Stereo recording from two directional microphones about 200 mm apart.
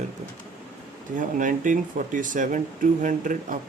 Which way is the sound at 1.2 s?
40° right (ahead or behind).